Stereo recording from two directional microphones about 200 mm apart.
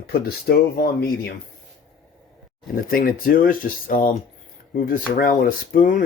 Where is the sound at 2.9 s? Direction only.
45° left (ahead or behind).